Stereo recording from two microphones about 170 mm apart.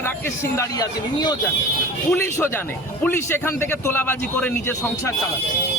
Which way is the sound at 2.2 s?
15° left (ahead or behind).